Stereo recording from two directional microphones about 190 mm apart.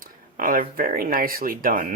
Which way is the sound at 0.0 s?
45° right (ahead or behind).